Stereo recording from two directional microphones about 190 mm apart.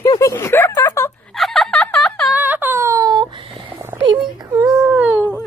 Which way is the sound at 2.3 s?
10° right (ahead or behind).